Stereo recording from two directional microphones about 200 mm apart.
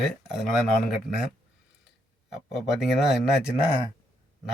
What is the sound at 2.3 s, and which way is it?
A man's voice, centre (ahead or behind).